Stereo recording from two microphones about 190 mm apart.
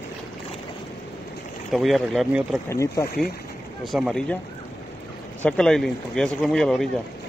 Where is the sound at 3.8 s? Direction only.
Centre (ahead or behind).